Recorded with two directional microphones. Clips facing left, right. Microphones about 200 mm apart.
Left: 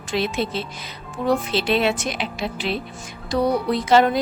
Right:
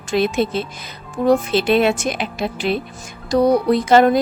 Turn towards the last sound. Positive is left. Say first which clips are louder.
# right 4 dB
turn(degrees=-45)  # may be behind; listen again after turning